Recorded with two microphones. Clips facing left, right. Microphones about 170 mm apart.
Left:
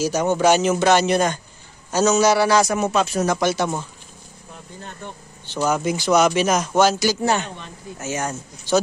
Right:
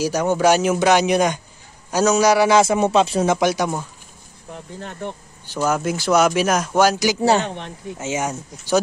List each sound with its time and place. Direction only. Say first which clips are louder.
0.3 s a man's voice: right 1 dB; 10° right (ahead or behind); by 3.3 s 25° right (ahead or behind)
3.3 s speech: right 1 dB; 15° right (ahead or behind)
5.5 s speech: even; 5° right (ahead or behind)
7.2 s a man's voice: right 4 dB; 25° right (ahead or behind)